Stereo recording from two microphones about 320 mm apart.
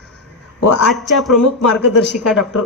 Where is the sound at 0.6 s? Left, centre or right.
Left.